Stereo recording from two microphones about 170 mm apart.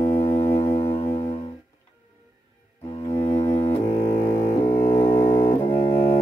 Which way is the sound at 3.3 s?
15° left (ahead or behind).